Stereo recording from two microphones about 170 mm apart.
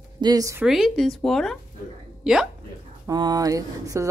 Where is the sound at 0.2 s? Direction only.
20° right (ahead or behind).